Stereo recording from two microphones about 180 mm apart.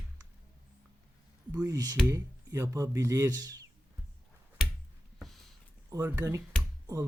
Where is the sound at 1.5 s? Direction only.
20° right (ahead or behind).